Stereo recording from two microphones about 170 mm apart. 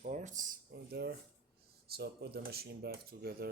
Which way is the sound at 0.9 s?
70° right (ahead or behind).